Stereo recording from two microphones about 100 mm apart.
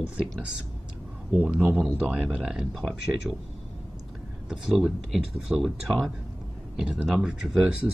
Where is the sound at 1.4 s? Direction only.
15° right (ahead or behind).